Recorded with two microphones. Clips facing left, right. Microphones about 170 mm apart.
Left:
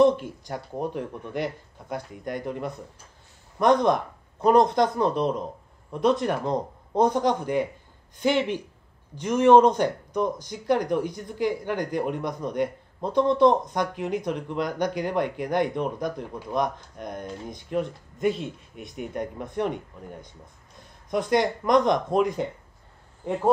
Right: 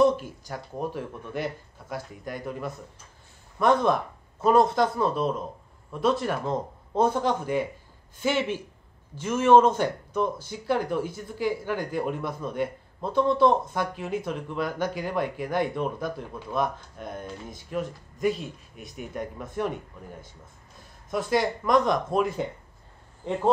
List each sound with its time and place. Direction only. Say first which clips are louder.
0.0 s speech: left 2 dB; 20° left (ahead or behind)